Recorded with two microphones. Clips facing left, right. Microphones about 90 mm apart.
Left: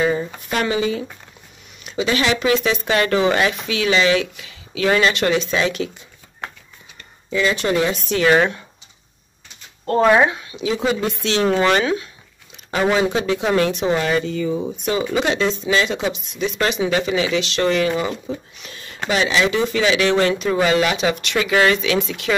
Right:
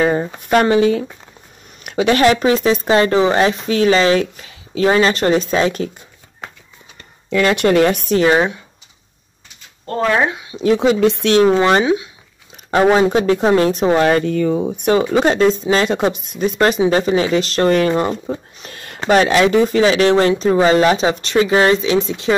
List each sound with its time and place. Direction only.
0.0 s speech: 50° right (ahead or behind)
7.2 s speech: 65° right (ahead or behind); by 8.3 s 45° right (ahead or behind)
10.6 s speech: 60° right (ahead or behind)
11.4 s speech: 25° right (ahead or behind)
12.9 s speech: 45° right (ahead or behind)
13.5 s speech: 35° right (ahead or behind); by 15.0 s 55° right (ahead or behind)
15.1 s speech: 45° right (ahead or behind); by 22.3 s 30° right (ahead or behind)